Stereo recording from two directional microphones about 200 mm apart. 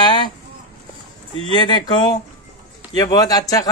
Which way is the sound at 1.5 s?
20° left (ahead or behind).